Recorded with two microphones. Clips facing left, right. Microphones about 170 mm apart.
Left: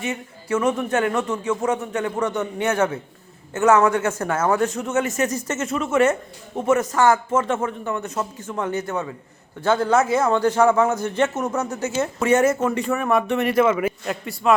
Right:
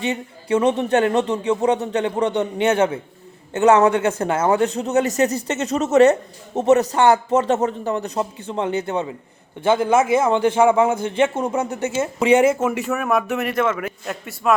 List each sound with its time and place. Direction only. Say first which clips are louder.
0.0 s a man's voice: right 4 dB; 30° right (ahead or behind); by 10.9 s 10° right (ahead or behind)
11.6 s a man's voice: right 2 dB; 30° right (ahead or behind)
11.9 s speech: right 3 dB; 10° right (ahead or behind)